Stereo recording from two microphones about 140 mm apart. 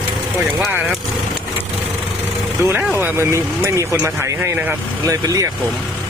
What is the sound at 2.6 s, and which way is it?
Speech, 15° right (ahead or behind).